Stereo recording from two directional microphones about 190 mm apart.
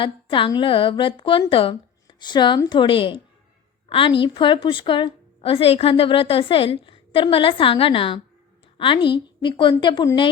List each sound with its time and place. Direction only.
0.0 s a woman's voice: 25° left (ahead or behind)